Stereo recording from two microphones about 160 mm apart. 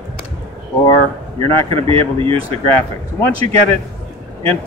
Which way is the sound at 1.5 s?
35° right (ahead or behind).